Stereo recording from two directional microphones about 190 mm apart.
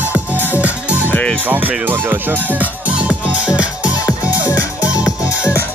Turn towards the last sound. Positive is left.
turn(degrees=15)  # may be behind; listen again after turning